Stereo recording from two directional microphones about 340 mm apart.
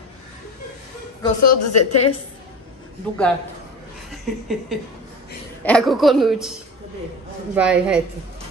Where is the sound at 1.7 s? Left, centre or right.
Left.